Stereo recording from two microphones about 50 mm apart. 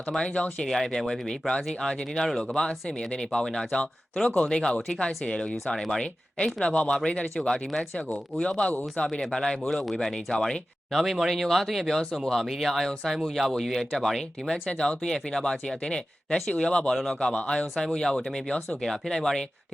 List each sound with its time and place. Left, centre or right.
0.2 s speech: left
0.6 s speech: centre
10.9 s speech: centre
16.9 s speech: centre
17.2 s speech: centre